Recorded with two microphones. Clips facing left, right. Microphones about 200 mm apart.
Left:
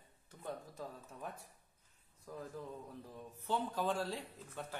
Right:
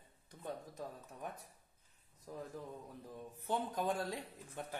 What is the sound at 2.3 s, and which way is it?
Speech, 25° right (ahead or behind).